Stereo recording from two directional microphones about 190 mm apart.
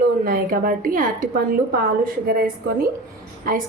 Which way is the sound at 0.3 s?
50° right (ahead or behind).